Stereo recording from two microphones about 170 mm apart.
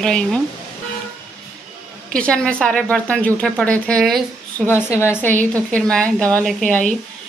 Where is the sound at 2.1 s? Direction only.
5° left (ahead or behind).